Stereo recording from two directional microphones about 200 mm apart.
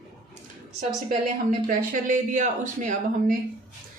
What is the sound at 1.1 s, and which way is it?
Speech, 45° right (ahead or behind).